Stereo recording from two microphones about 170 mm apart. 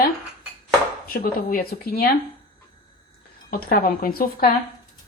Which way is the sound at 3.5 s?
60° left (ahead or behind).